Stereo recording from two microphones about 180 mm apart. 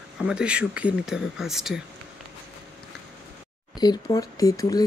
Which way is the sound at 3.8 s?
20° left (ahead or behind).